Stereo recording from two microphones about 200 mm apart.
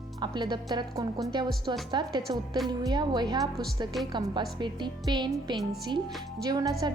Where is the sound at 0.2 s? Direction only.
20° right (ahead or behind).